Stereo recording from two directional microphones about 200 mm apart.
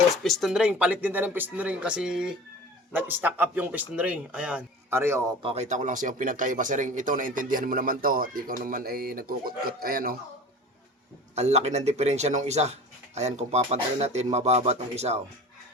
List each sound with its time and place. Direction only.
0.2 s speech: centre (ahead or behind)
5.4 s speech: 30° right (ahead or behind); by 10.2 s 45° right (ahead or behind)
11.3 s speech: 35° right (ahead or behind)